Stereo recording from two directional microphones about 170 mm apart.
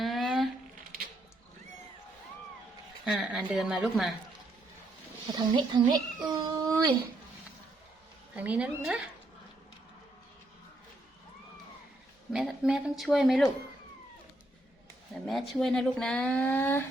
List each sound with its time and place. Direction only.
0.0 s a sound: centre (ahead or behind)
3.1 s speech: 5° right (ahead or behind)
5.3 s a child's voice: 25° right (ahead or behind)
8.4 s a woman's voice: 10° right (ahead or behind)
12.3 s speech: 5° right (ahead or behind)
15.3 s speech: centre (ahead or behind)